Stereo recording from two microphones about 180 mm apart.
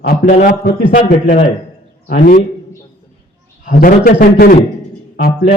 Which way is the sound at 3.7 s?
50° left (ahead or behind).